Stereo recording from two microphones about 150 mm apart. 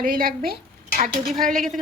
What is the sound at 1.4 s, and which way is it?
Speech, 5° left (ahead or behind).